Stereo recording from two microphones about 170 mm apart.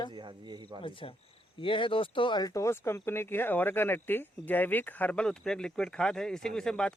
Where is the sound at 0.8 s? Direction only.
30° left (ahead or behind).